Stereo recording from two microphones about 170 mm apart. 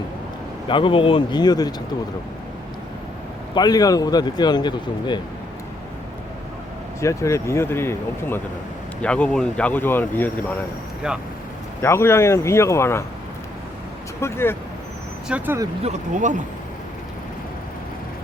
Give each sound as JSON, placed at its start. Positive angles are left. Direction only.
{"t": 0.7, "sound": "a man's voice", "side_deg": 30}
{"t": 3.5, "sound": "a man's voice", "side_deg": 25}
{"t": 7.0, "sound": "speech", "side_deg": 15}
{"t": 11.8, "sound": "speech", "side_deg": 15}
{"t": 14.2, "sound": "speech", "side_deg": 15}
{"t": 15.3, "sound": "speech", "side_deg": -10}
{"t": 15.8, "sound": "speech", "side_deg": -45}